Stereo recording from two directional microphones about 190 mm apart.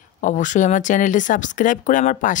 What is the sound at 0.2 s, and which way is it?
Speech, 40° left (ahead or behind).